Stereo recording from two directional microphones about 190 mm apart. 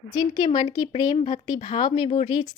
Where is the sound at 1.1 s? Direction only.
35° left (ahead or behind).